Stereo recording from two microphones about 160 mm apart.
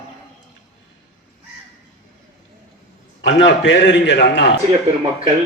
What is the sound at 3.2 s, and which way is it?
A man's voice, 90° left.